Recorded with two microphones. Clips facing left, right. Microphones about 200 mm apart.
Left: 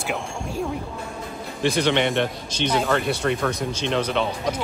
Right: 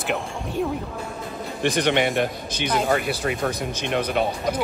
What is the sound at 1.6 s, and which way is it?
Speech, 55° right (ahead or behind).